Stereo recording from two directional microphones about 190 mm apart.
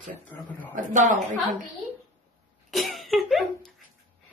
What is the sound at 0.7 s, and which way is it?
Speech, 40° right (ahead or behind).